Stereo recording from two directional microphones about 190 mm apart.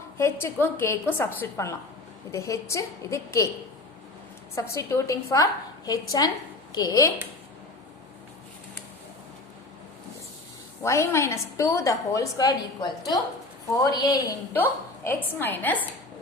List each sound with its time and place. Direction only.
0.2 s a woman's voice: 15° left (ahead or behind)
4.5 s a woman's voice: 15° left (ahead or behind)
10.8 s a woman's voice: 15° left (ahead or behind)
13.9 s a woman's voice: 20° left (ahead or behind)